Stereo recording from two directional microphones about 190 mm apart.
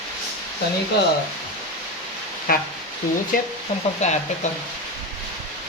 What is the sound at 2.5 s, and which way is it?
Speech, 50° left (ahead or behind).